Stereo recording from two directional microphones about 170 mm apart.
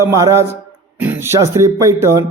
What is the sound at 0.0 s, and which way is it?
A man's voice, 15° right (ahead or behind).